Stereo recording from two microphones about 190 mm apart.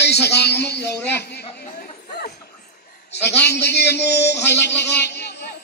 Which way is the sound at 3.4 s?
60° left (ahead or behind).